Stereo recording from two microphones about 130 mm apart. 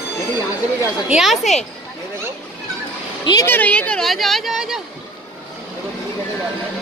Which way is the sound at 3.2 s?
35° left (ahead or behind).